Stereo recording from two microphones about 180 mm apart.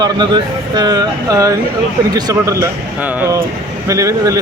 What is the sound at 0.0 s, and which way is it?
A man's voice, 25° right (ahead or behind).